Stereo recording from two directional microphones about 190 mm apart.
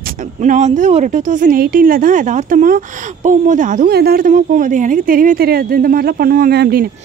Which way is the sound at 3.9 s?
55° right (ahead or behind).